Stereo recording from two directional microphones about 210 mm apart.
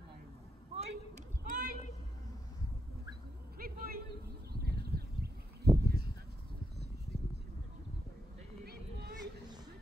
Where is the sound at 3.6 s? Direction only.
45° right (ahead or behind).